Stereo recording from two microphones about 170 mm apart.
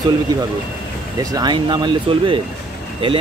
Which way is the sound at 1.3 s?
25° right (ahead or behind).